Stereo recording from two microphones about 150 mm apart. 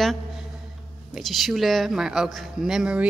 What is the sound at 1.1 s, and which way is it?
A woman's voice, centre (ahead or behind).